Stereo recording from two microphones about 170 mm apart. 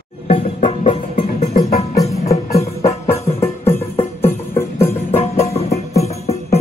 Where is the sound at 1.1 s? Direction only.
50° left (ahead or behind).